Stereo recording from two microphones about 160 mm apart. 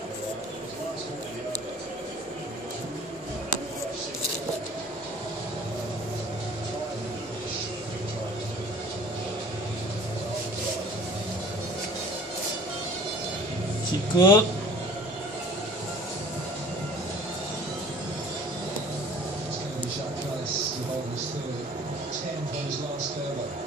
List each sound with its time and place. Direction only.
14.1 s speech: 30° left (ahead or behind)